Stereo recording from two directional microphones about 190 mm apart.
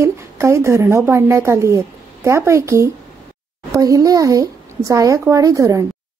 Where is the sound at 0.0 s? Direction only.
15° right (ahead or behind).